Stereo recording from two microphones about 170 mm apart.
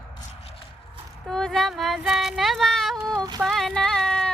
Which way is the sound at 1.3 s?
5° left (ahead or behind).